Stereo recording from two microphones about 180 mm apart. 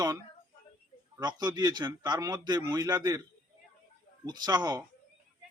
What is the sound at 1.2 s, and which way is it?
A man's voice, 25° right (ahead or behind).